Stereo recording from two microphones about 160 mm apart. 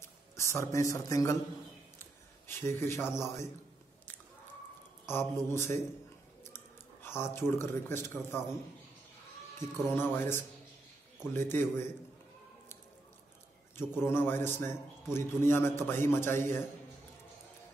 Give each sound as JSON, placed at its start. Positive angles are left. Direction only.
{"t": 0.0, "sound": "a man's voice", "side_deg": 15}
{"t": 2.4, "sound": "a man's voice", "side_deg": 15}
{"t": 5.0, "sound": "a man's voice", "side_deg": 15}
{"t": 9.6, "sound": "a man's voice", "side_deg": 15}
{"t": 13.7, "sound": "a man's voice", "side_deg": 15}